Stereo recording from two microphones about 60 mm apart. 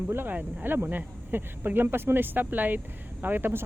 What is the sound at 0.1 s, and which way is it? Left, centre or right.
Speech, right.